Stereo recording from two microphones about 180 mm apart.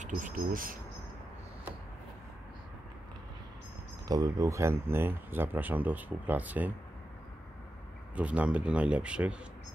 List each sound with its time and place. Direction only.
0.0 s speech: 50° right (ahead or behind)
4.1 s speech: 20° right (ahead or behind)
8.2 s speech: 5° right (ahead or behind)